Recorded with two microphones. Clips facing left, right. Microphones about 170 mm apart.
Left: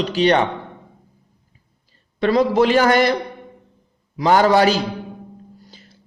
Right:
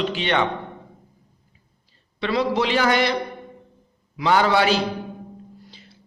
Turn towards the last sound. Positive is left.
turn(degrees=45)  # may be behind; listen again after turning